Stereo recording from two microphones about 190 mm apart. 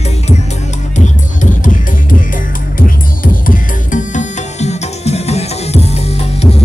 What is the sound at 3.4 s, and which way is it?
Music, 40° left (ahead or behind).